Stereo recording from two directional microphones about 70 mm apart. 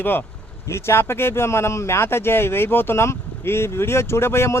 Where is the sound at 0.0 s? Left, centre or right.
Left.